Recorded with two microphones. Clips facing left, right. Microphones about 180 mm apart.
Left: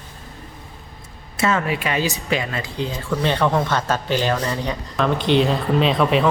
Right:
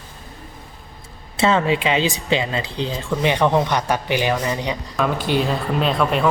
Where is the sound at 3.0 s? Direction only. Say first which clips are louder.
Right 1 dB; 15° right (ahead or behind).